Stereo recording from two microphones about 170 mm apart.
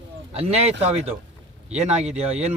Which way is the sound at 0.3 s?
35° right (ahead or behind).